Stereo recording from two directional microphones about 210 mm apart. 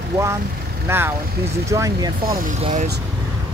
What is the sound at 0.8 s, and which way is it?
Speech, 10° right (ahead or behind).